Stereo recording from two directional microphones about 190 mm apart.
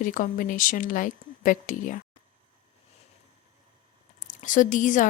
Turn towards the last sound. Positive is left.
turn(degrees=40)  # may be behind; listen again after turning